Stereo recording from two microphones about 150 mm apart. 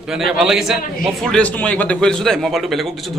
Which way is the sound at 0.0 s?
5° right (ahead or behind).